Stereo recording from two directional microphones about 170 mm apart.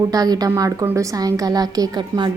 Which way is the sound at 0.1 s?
20° right (ahead or behind).